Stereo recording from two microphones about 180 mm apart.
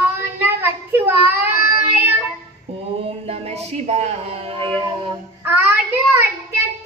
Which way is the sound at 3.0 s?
35° right (ahead or behind).